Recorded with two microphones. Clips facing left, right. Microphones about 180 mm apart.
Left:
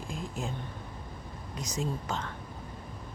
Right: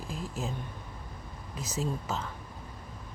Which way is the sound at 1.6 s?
5° right (ahead or behind).